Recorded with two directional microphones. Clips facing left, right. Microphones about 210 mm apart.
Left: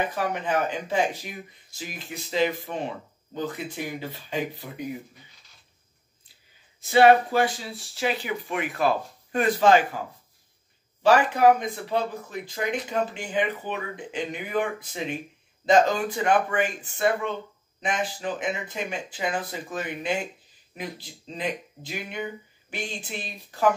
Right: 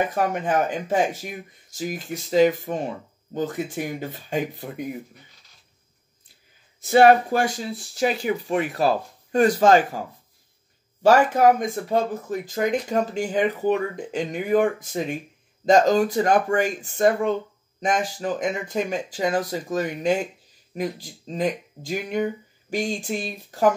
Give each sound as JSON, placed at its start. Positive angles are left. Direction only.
{"t": 0.1, "sound": "speech", "side_deg": -45}
{"t": 6.9, "sound": "speech", "side_deg": -45}
{"t": 11.0, "sound": "speech", "side_deg": -45}